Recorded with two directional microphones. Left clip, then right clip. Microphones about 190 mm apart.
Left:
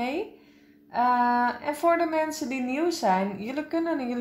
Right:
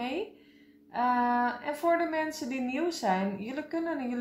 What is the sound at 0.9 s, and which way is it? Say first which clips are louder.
A woman's voice: left 5 dB; 30° left (ahead or behind).